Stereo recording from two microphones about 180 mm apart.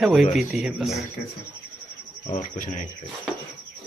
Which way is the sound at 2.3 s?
45° left (ahead or behind).